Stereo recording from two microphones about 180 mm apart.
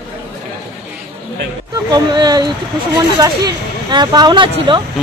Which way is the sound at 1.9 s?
25° right (ahead or behind).